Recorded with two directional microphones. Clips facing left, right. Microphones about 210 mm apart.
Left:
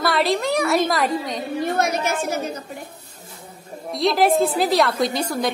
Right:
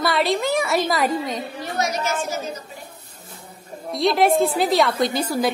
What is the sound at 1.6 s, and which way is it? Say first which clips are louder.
A woman's voice: left 5 dB; 55° left (ahead or behind).